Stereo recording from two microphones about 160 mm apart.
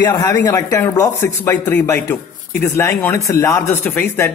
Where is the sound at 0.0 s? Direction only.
25° left (ahead or behind).